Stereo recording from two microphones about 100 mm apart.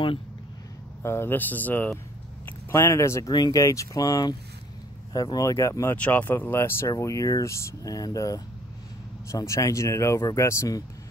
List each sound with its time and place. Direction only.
1.0 s speech: 25° left (ahead or behind)
2.7 s speech: 30° left (ahead or behind)
3.3 s speech: 45° left (ahead or behind)
3.6 s speech: 30° left (ahead or behind)
5.9 s speech: 15° left (ahead or behind); by 10.8 s 30° left (ahead or behind)